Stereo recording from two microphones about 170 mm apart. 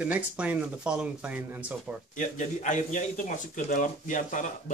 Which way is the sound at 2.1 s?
45° left (ahead or behind).